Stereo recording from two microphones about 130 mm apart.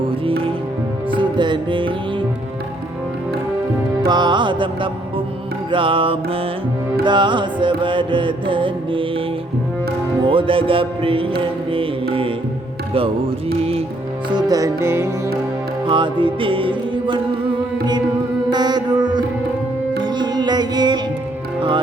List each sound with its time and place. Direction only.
1.1 s music: 40° right (ahead or behind)
4.0 s music: 35° right (ahead or behind)
10.2 s music: 40° right (ahead or behind)
14.3 s music: 30° right (ahead or behind)
15.9 s music: 40° right (ahead or behind)
18.5 s music: 35° right (ahead or behind)